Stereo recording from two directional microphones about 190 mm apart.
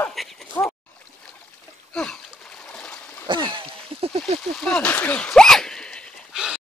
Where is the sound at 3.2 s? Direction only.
25° right (ahead or behind).